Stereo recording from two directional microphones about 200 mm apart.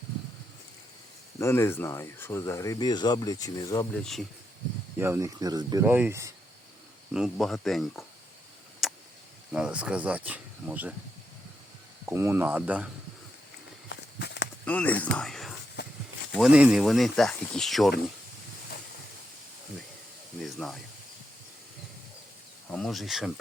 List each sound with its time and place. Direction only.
1.4 s speech: 10° left (ahead or behind)
4.9 s speech: 10° right (ahead or behind)
7.1 s speech: centre (ahead or behind)
8.8 s a sound: centre (ahead or behind)
9.5 s speech: 5° right (ahead or behind)
12.0 s speech: 10° right (ahead or behind)
13.9 s walk: 60° left (ahead or behind)
14.6 s speech: 5° left (ahead or behind)
20.4 s speech: centre (ahead or behind)
22.7 s speech: centre (ahead or behind)